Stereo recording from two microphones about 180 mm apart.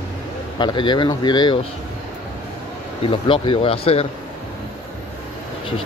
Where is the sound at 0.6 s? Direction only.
25° left (ahead or behind).